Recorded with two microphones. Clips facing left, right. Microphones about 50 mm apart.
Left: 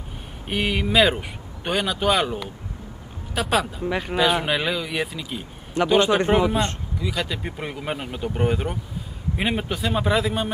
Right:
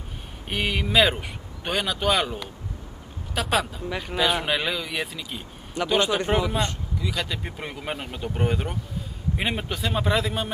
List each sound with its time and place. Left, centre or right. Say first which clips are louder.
0.5 s a man's voice: left 3 dB; centre
3.8 s speech: left 5 dB; centre
4.2 s a man's voice: left 2 dB; centre
6.0 s speech: left 5 dB; centre
7.0 s a man's voice: left 2 dB; centre